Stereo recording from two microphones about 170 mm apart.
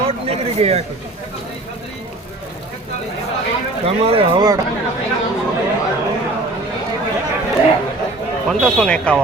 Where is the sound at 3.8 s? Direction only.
35° right (ahead or behind).